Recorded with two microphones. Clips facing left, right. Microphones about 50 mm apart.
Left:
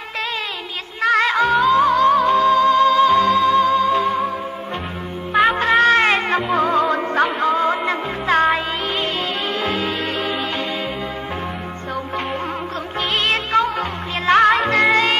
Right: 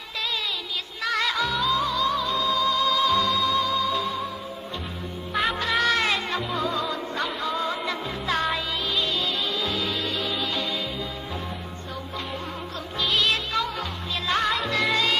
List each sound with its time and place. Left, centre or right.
1.0 s music: left
5.3 s music: left
5.8 s music: left
9.6 s music: left
13.1 s music: left
14.6 s music: left